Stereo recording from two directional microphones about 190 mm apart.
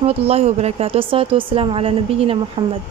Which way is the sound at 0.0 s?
30° right (ahead or behind).